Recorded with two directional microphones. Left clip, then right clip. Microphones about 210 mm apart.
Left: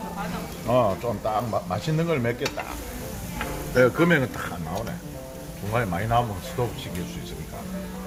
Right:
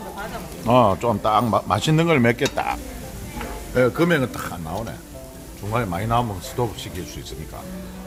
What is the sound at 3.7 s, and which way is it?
Speech, 15° right (ahead or behind).